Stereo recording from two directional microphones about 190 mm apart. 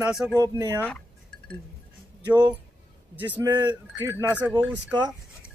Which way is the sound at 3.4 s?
20° right (ahead or behind).